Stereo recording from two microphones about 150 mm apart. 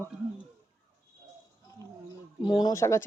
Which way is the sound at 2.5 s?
30° left (ahead or behind).